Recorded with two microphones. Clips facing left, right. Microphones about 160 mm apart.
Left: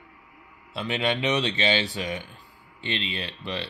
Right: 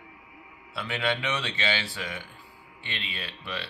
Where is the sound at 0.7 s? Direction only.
20° left (ahead or behind).